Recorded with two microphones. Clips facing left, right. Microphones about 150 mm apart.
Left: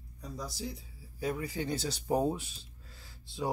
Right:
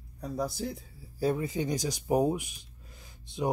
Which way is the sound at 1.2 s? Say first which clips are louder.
Right 5 dB; 25° right (ahead or behind).